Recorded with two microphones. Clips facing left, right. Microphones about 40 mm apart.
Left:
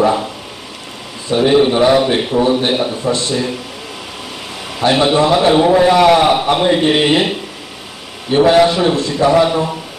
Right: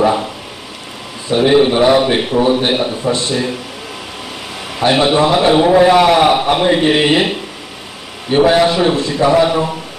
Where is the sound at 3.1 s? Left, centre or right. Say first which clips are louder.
Right 1 dB; right.